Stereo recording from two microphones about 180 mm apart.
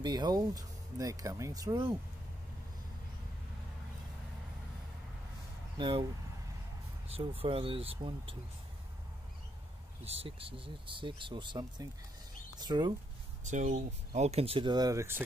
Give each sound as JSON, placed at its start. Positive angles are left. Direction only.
{"t": 0.0, "sound": "speech", "side_deg": -20}
{"t": 5.8, "sound": "speech", "side_deg": -25}
{"t": 7.1, "sound": "speech", "side_deg": -30}
{"t": 10.0, "sound": "speech", "side_deg": -30}
{"t": 13.5, "sound": "speech", "side_deg": -40}